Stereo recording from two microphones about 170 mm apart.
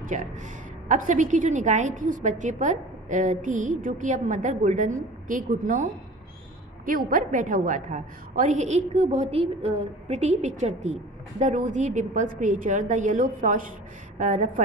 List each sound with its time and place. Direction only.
0.0 s a woman's voice: 45° right (ahead or behind)
6.9 s a woman's voice: 55° right (ahead or behind)